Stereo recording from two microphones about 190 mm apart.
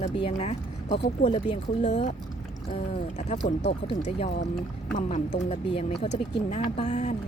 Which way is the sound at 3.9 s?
30° left (ahead or behind).